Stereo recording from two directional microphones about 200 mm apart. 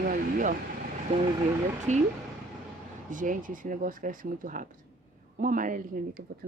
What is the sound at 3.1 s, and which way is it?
Speech, 40° right (ahead or behind).